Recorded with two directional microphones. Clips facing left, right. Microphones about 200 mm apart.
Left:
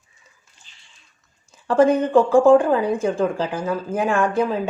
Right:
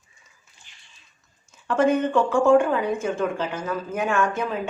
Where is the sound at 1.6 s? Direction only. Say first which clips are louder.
Left 4 dB; 35° left (ahead or behind).